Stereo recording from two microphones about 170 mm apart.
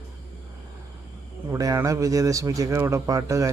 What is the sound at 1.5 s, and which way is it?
Speech, 20° right (ahead or behind).